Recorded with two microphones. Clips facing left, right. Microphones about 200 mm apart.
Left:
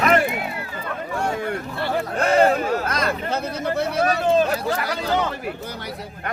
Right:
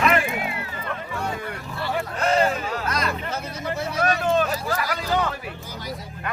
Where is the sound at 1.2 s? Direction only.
50° left (ahead or behind).